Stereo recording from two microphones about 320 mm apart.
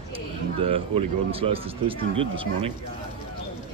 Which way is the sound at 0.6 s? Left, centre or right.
Centre.